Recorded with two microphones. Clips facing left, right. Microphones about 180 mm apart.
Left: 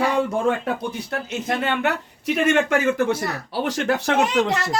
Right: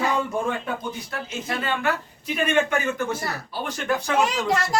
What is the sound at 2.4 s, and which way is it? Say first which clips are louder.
Speech: left 3 dB; 85° left.